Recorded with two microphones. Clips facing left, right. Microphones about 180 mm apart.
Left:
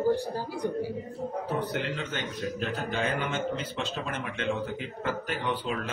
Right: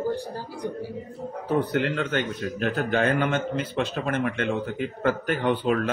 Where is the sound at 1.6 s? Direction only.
55° right (ahead or behind).